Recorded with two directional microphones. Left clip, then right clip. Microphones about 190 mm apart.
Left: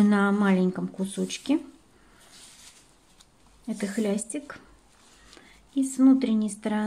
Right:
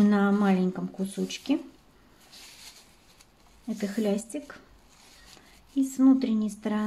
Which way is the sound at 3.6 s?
25° left (ahead or behind).